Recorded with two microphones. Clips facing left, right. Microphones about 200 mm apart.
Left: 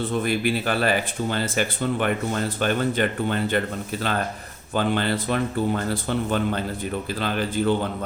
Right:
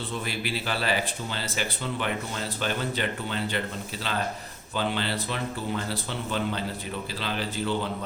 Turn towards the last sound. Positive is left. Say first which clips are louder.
# left 6 dB
turn(degrees=50)  # may be behind; listen again after turning